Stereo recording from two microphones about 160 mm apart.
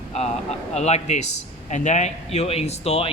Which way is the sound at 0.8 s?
45° left (ahead or behind).